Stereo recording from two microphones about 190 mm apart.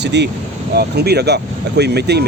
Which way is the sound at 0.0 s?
65° right (ahead or behind).